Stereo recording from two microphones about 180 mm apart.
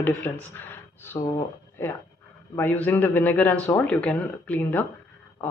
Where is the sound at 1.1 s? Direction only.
25° left (ahead or behind).